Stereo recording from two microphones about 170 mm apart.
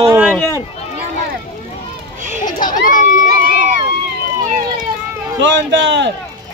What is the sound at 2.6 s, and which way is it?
Crowd, 50° left (ahead or behind).